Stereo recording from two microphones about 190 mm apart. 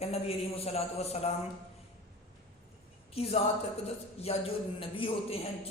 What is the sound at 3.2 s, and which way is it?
A man's voice, 30° left (ahead or behind).